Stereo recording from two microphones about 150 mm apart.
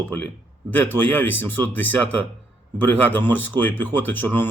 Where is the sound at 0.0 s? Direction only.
10° left (ahead or behind).